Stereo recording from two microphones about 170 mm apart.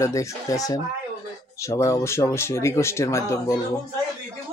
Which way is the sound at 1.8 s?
15° left (ahead or behind).